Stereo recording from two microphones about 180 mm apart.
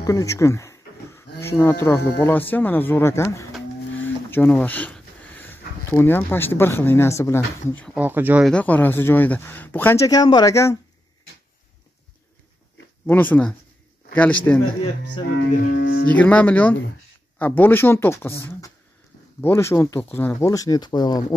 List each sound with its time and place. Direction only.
0.0 s speech: 20° left (ahead or behind)
7.9 s speech: 10° right (ahead or behind)
8.5 s speech: 5° left (ahead or behind)
13.0 s speech: 10° left (ahead or behind)
15.3 s speech: 50° left (ahead or behind)
16.1 s speech: 5° left (ahead or behind); by 21.4 s 20° left (ahead or behind)